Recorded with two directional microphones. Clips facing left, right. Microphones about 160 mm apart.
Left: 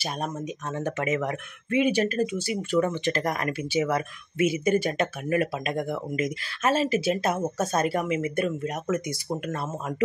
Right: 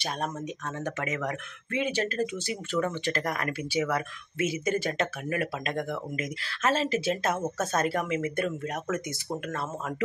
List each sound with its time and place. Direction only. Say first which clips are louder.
0.7 s speech: left 6 dB; 20° left (ahead or behind)